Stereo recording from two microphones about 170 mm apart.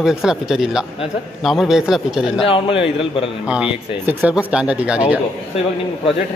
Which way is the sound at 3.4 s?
5° right (ahead or behind).